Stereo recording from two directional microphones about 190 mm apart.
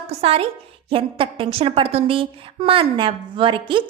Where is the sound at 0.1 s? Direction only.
30° right (ahead or behind).